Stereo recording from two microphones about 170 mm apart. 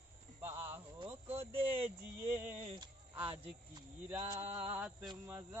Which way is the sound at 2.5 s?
40° right (ahead or behind).